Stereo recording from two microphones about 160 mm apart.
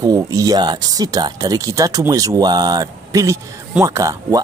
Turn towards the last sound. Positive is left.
turn(degrees=-20)  # may be behind; listen again after turning